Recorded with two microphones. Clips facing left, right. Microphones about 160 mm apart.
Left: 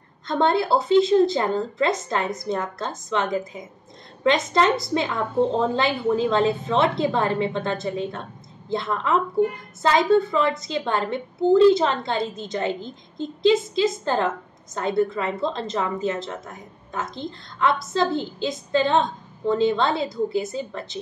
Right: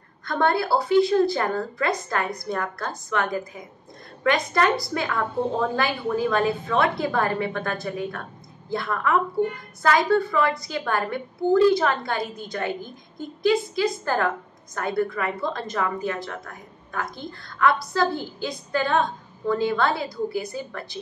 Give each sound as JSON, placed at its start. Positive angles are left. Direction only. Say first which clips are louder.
{"t": 0.3, "sound": "a woman's voice", "louder": "left 2 dB", "side_deg": 20}